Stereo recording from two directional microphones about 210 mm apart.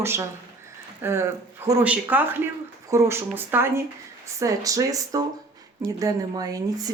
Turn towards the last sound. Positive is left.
turn(degrees=-15)  # may be behind; listen again after turning